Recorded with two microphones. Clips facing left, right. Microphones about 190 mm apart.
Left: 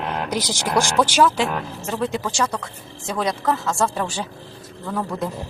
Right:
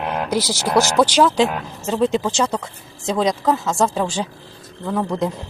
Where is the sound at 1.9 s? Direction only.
20° right (ahead or behind).